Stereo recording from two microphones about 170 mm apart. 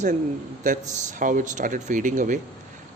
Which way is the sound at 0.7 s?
50° right (ahead or behind).